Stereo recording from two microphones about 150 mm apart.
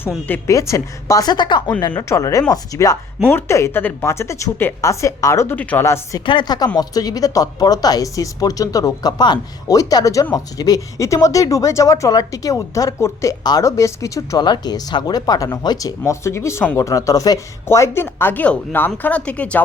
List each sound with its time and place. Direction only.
0.3 s speech: 20° left (ahead or behind)
1.9 s speech: 20° left (ahead or behind)